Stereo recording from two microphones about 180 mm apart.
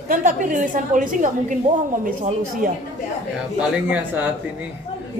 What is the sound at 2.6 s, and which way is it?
Speech, 50° right (ahead or behind).